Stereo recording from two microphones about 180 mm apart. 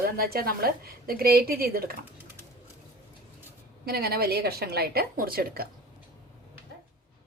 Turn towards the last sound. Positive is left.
turn(degrees=-55)  # may be behind; listen again after turning